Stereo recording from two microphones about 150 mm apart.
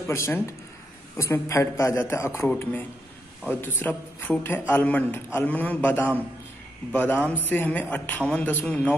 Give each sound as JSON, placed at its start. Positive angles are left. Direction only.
{"t": 0.0, "sound": "a man's voice", "side_deg": 15}